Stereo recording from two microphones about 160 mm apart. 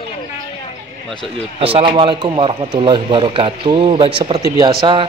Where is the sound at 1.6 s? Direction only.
35° right (ahead or behind).